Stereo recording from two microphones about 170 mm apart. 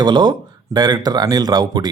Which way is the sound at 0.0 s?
25° right (ahead or behind).